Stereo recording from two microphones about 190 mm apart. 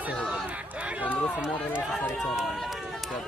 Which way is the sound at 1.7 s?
5° right (ahead or behind).